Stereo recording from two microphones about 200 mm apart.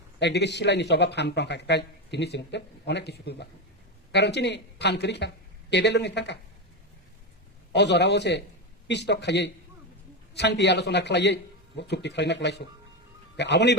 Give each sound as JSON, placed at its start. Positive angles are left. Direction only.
{"t": 0.2, "sound": "speech", "side_deg": 60}
{"t": 7.7, "sound": "speech", "side_deg": 60}